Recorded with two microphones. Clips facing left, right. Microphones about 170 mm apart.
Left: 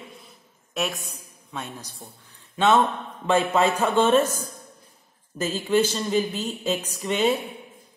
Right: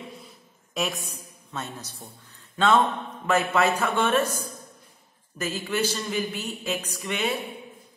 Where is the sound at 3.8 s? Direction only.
30° left (ahead or behind).